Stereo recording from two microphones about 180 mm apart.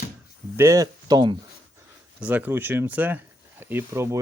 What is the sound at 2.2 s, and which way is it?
Speech, 10° right (ahead or behind).